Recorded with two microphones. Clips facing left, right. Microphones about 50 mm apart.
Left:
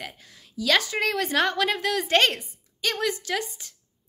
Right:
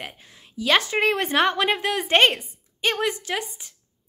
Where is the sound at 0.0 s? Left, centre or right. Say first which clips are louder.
Right 1 dB; right.